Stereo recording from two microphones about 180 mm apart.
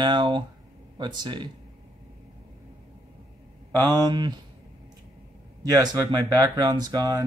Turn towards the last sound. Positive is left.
turn(degrees=-20)  # may be behind; listen again after turning